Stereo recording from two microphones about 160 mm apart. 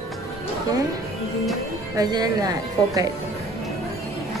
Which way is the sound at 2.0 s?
25° right (ahead or behind).